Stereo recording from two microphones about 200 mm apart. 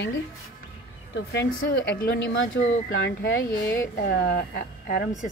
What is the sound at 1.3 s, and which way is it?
Speech, 55° left (ahead or behind).